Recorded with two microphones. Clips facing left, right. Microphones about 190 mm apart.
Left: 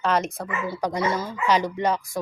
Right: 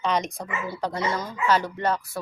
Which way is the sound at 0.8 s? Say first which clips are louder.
Left 3 dB; 15° left (ahead or behind).